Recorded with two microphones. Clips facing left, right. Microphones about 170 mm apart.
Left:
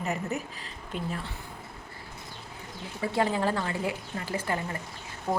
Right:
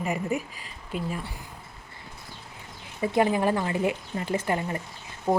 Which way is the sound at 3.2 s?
15° right (ahead or behind).